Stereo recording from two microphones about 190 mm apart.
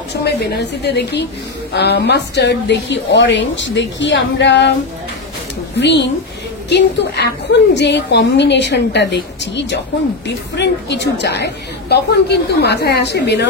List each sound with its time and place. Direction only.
0.1 s a woman's voice: 60° left (ahead or behind)
5.8 s a woman's voice: 65° left (ahead or behind)